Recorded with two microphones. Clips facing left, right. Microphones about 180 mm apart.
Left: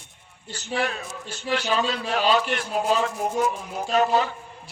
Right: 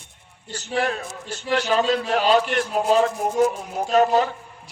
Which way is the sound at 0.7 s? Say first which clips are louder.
Right 3 dB; 50° right (ahead or behind).